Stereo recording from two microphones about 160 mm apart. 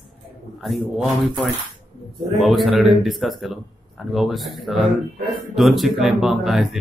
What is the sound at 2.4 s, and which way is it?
Speech, centre (ahead or behind).